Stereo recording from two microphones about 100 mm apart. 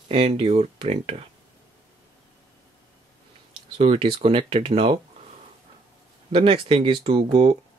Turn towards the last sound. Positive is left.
turn(degrees=-85)